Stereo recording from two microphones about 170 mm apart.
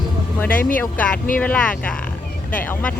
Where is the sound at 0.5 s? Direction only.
55° left (ahead or behind).